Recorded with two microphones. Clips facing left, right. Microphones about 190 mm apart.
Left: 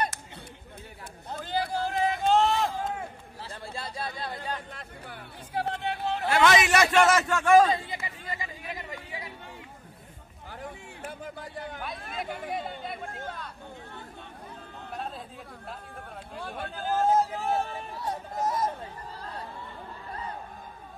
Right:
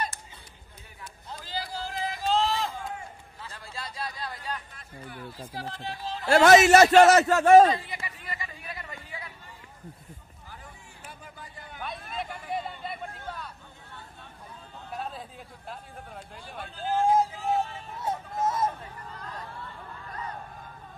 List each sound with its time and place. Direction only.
1.3 s run: 55° left (ahead or behind)
4.4 s speech: 70° left (ahead or behind)
6.2 s a man's voice: 45° right (ahead or behind)
7.9 s a sound: 20° left (ahead or behind)
10.5 s a sound: 55° left (ahead or behind)
12.0 s chatter: 55° left (ahead or behind)
14.9 s a sound: centre (ahead or behind)
16.6 s speech: 55° left (ahead or behind)
17.0 s vehicle: 10° right (ahead or behind)
17.3 s music: 60° left (ahead or behind)
18.0 s vehicle: 25° right (ahead or behind)
19.1 s chatter: 30° left (ahead or behind)